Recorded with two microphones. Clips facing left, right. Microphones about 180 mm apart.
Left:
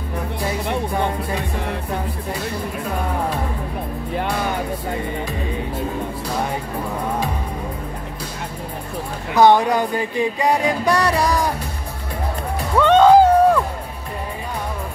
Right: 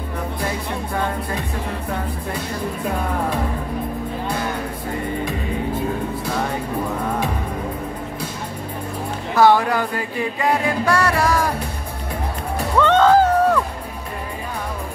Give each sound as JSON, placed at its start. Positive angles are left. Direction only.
{"t": 9.3, "sound": "music", "side_deg": 20}
{"t": 12.7, "sound": "music", "side_deg": 15}